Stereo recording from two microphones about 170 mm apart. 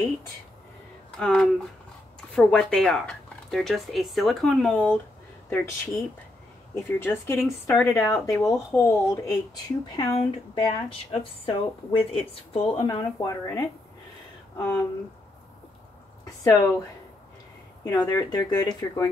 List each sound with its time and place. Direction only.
1.2 s speech: 5° left (ahead or behind)
5.5 s speech: 15° left (ahead or behind)
9.9 s speech: 30° left (ahead or behind)
12.8 s speech: 20° left (ahead or behind)
16.3 s a sound: 20° left (ahead or behind)
17.8 s speech: 20° left (ahead or behind)